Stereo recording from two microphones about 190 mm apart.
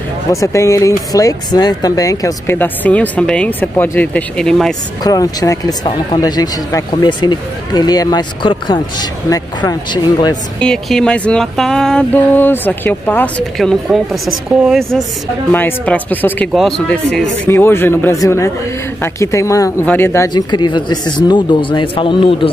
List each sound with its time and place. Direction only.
0.3 s speech: 15° left (ahead or behind)
5.0 s speech: 20° left (ahead or behind)
10.6 s speech: 5° left (ahead or behind); by 22.5 s 25° left (ahead or behind)